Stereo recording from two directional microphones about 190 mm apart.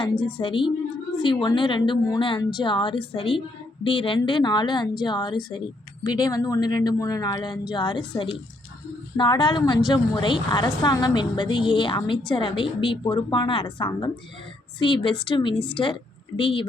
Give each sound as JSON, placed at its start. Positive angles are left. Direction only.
{"t": 0.0, "sound": "a woman's voice", "side_deg": 25}